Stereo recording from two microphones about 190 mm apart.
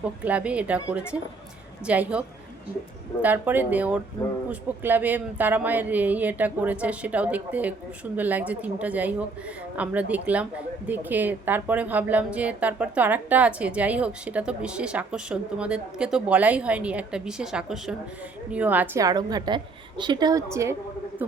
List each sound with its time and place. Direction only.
0.2 s a woman's voice: 5° right (ahead or behind)